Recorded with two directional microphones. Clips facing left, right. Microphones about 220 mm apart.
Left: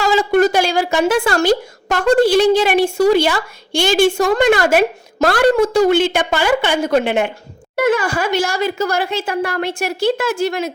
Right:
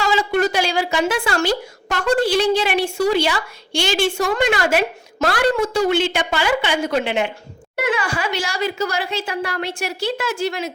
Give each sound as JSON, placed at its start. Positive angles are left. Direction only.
{"t": 0.0, "sound": "speech", "side_deg": 45}